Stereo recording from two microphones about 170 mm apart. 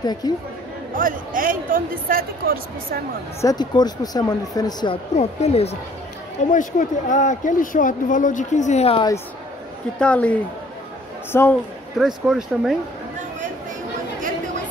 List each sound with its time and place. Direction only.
0.0 s speech: 25° left (ahead or behind)
0.9 s speech: 55° right (ahead or behind)
3.3 s speech: 20° left (ahead or behind)
5.1 s speech: 40° left (ahead or behind)
6.5 s speech: 50° left (ahead or behind)
9.9 s speech: 5° left (ahead or behind)
11.3 s speech: 15° left (ahead or behind)
12.3 s speech: centre (ahead or behind)